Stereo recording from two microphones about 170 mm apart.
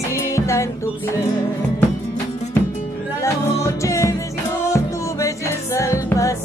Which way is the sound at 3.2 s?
15° left (ahead or behind).